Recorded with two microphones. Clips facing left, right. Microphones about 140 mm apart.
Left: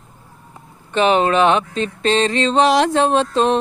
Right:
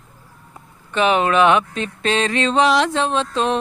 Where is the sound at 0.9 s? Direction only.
30° left (ahead or behind).